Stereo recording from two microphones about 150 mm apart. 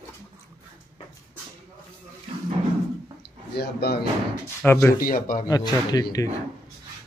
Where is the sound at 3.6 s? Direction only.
90° left.